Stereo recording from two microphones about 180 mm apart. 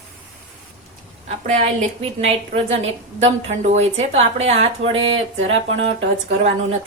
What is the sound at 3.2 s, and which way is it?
Speech, 35° right (ahead or behind).